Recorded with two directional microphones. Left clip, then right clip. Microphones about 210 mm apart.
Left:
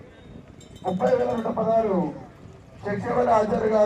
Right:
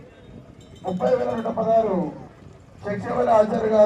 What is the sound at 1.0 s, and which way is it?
Speech, 30° left (ahead or behind).